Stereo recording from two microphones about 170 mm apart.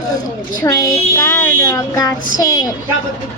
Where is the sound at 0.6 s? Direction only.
20° left (ahead or behind).